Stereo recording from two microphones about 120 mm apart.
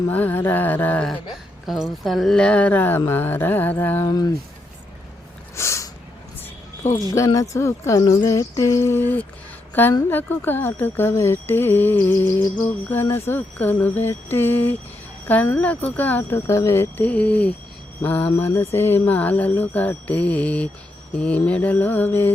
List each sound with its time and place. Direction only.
0.1 s mantra: 15° left (ahead or behind)
1.6 s mantra: centre (ahead or behind); by 4.1 s 15° left (ahead or behind)
5.5 s a sound: 25° left (ahead or behind)
7.3 s speech: 25° left (ahead or behind)
9.8 s mantra: 15° left (ahead or behind)